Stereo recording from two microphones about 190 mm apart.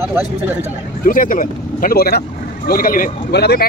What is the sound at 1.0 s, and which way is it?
Speech, 45° left (ahead or behind).